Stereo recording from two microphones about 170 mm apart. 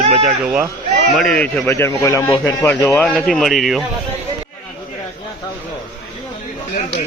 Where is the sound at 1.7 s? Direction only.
15° left (ahead or behind); by 3.8 s centre (ahead or behind).